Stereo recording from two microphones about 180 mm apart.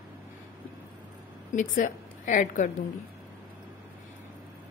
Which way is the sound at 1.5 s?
45° left (ahead or behind).